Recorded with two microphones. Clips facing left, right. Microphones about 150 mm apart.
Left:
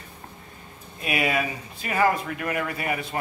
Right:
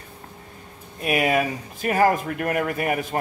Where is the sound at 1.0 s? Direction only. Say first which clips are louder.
Right 4 dB; 50° right (ahead or behind).